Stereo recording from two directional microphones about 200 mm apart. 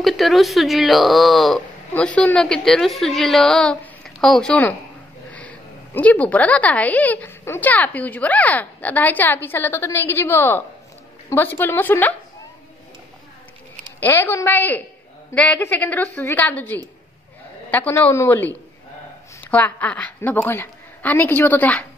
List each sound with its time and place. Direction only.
0.0 s a woman's voice: centre (ahead or behind)
13.9 s a woman's voice: 10° left (ahead or behind)